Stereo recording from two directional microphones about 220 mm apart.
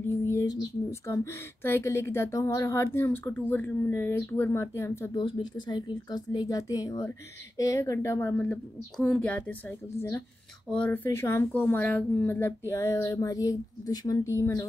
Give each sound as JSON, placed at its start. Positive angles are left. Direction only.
{"t": 0.3, "sound": "speech", "side_deg": 15}